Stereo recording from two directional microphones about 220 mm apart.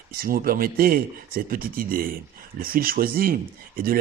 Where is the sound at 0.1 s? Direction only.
40° right (ahead or behind).